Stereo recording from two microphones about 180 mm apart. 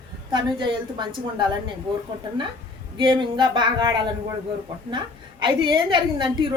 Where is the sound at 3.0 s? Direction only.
25° right (ahead or behind).